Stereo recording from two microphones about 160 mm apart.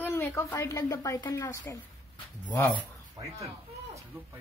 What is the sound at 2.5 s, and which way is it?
Speech, 10° left (ahead or behind).